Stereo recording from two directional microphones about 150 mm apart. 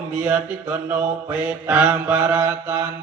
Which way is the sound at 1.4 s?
10° right (ahead or behind).